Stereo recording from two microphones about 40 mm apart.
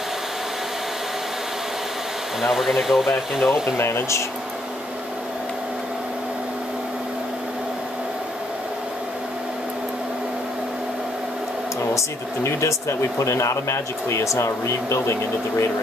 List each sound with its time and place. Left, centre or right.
2.4 s speech: centre